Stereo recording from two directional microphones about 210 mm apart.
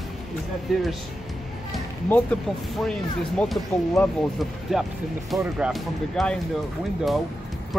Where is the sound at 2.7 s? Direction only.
Centre (ahead or behind).